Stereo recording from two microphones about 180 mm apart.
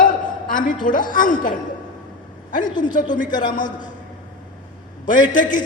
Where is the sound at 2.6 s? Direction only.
25° left (ahead or behind).